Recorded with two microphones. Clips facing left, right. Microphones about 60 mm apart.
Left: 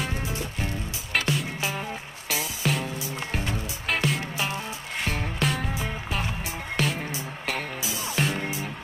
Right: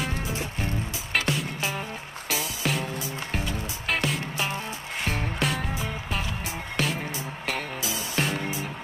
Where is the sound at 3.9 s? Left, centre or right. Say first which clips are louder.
Left 1 dB; centre.